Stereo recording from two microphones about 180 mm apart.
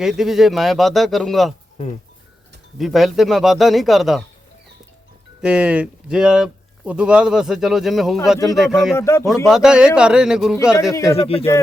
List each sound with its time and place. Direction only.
0.0 s speech: centre (ahead or behind)
2.7 s speech: centre (ahead or behind)
5.4 s speech: 5° right (ahead or behind)
9.0 s speech: 15° left (ahead or behind)
9.5 s speech: 5° right (ahead or behind)
10.9 s speech: 15° left (ahead or behind)
11.2 s speech: 30° left (ahead or behind)